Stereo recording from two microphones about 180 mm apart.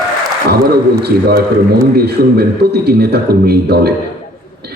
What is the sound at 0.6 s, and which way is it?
A man's voice, 60° right (ahead or behind).